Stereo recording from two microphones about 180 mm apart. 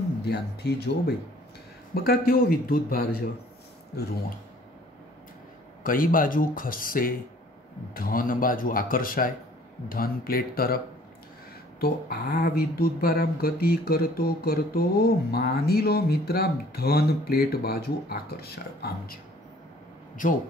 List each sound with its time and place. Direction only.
0.3 s speech: 65° left (ahead or behind)
5.9 s speech: 50° left (ahead or behind)
11.8 s speech: 55° left (ahead or behind)